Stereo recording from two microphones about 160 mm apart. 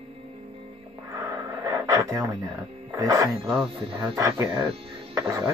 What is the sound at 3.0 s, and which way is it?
Speech, 20° right (ahead or behind).